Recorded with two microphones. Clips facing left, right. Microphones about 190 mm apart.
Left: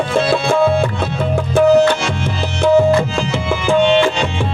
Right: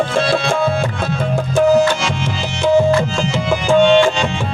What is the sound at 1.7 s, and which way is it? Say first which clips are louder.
Tabla: left 2 dB; 60° left (ahead or behind).